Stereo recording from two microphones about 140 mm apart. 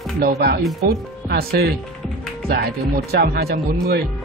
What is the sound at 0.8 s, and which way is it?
Speech, 90° right.